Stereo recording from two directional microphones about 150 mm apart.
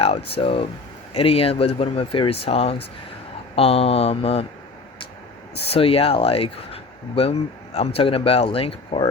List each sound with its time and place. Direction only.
0.3 s speech: 40° left (ahead or behind)
5.6 s speech: 40° left (ahead or behind)